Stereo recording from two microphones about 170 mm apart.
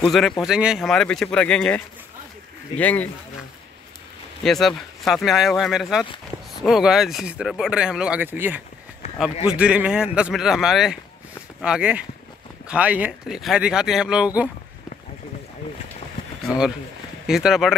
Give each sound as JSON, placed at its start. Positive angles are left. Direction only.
{"t": 0.0, "sound": "speech", "side_deg": 0}
{"t": 2.8, "sound": "speech", "side_deg": 10}
{"t": 4.4, "sound": "speech", "side_deg": 0}
{"t": 16.4, "sound": "speech", "side_deg": -5}